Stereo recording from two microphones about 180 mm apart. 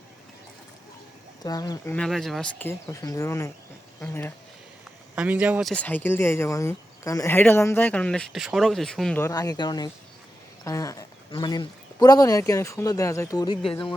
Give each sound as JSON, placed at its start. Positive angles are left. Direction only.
{"t": 1.5, "sound": "speech", "side_deg": 20}
{"t": 2.0, "sound": "speech", "side_deg": 0}
{"t": 5.1, "sound": "speech", "side_deg": -5}
{"t": 9.3, "sound": "speech", "side_deg": 20}